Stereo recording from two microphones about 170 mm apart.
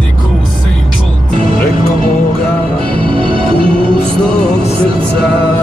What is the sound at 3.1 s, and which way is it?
Music, 30° right (ahead or behind).